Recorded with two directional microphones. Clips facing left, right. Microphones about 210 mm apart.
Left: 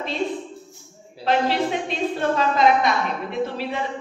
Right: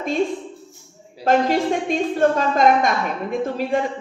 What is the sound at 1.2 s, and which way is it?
A woman's voice, 45° right (ahead or behind).